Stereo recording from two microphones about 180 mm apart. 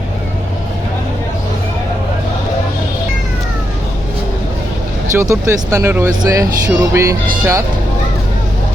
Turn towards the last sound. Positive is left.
turn(degrees=-15)  # may be behind; listen again after turning